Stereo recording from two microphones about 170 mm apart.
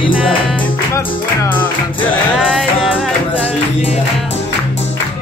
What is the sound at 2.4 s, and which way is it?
Music, centre (ahead or behind).